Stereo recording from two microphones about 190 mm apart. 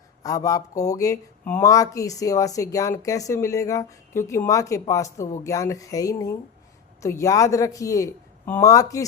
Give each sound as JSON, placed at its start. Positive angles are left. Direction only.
{"t": 0.2, "sound": "speech", "side_deg": 20}